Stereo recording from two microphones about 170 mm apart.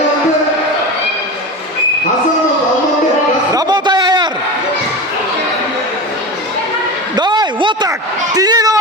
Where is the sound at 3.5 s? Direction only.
25° right (ahead or behind).